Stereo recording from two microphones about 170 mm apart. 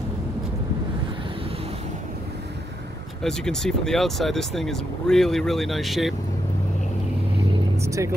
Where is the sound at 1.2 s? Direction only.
35° right (ahead or behind).